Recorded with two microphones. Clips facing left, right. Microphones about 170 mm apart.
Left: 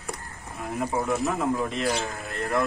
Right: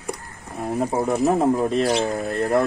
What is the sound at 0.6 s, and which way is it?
Speech, 35° right (ahead or behind).